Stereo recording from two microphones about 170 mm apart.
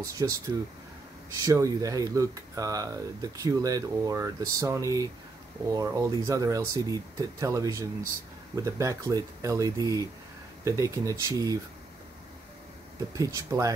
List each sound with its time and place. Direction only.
0.0 s speech: 20° right (ahead or behind)
1.4 s speech: 20° right (ahead or behind)
13.2 s speech: 20° right (ahead or behind)